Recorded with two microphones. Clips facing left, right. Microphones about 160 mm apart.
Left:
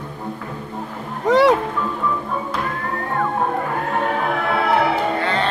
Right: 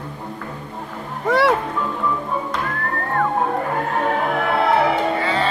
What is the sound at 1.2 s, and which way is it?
Speech, 20° left (ahead or behind).